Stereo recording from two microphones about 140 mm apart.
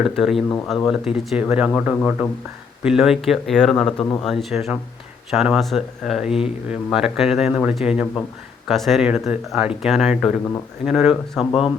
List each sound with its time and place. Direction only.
0.0 s speech: centre (ahead or behind)